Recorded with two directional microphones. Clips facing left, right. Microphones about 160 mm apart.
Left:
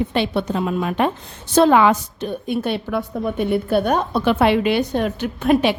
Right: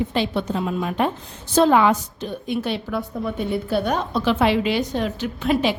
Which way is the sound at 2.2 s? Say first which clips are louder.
Left 3 dB; 55° left (ahead or behind).